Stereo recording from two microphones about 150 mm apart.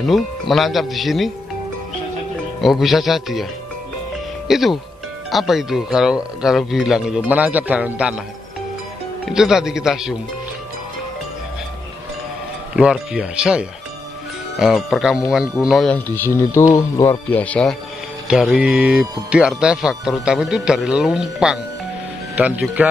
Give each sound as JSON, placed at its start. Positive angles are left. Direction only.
{"t": 0.0, "sound": "speech", "side_deg": 0}
{"t": 2.6, "sound": "speech", "side_deg": 0}
{"t": 4.5, "sound": "a man's voice", "side_deg": 0}
{"t": 9.3, "sound": "speech", "side_deg": -5}
{"t": 12.7, "sound": "speech", "side_deg": -5}
{"t": 15.9, "sound": "speech", "side_deg": 15}
{"t": 17.3, "sound": "speech", "side_deg": 10}
{"t": 18.3, "sound": "a man's voice", "side_deg": -5}